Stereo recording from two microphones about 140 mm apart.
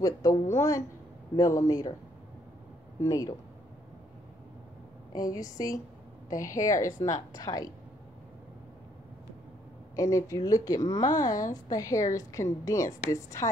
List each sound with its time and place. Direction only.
0.0 s a woman's voice: 25° left (ahead or behind)
3.0 s a woman's voice: 25° left (ahead or behind)
5.1 s a woman's voice: 25° left (ahead or behind)
9.9 s a woman's voice: 25° left (ahead or behind)